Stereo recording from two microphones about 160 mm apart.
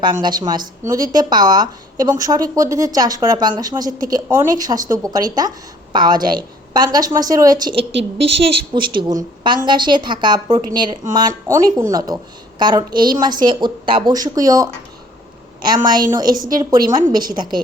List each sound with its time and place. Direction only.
0.0 s a woman's voice: 25° right (ahead or behind)